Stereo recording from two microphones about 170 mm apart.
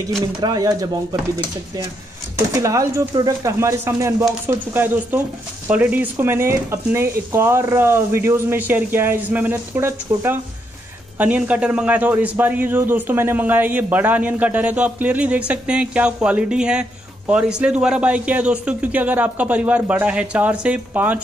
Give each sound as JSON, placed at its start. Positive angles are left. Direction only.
{"t": 0.4, "sound": "speech", "side_deg": -20}
{"t": 2.5, "sound": "a man's voice", "side_deg": -20}